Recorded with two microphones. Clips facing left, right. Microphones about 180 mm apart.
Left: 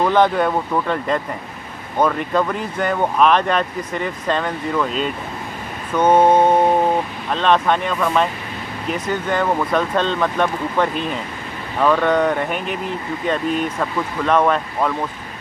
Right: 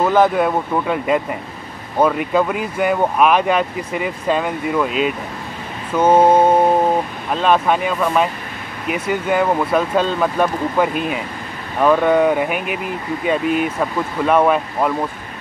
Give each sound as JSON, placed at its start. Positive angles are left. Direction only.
{"t": 0.0, "sound": "speech", "side_deg": -5}